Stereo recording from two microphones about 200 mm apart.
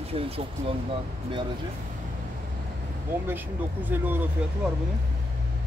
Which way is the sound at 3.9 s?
10° right (ahead or behind).